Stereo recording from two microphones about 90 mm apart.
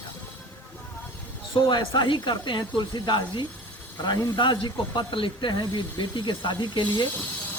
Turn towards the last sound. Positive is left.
turn(degrees=60)  # may be behind; listen again after turning